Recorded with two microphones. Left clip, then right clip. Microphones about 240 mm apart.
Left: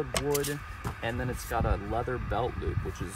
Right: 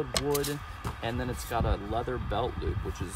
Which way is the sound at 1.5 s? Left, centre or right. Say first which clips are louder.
Even; centre.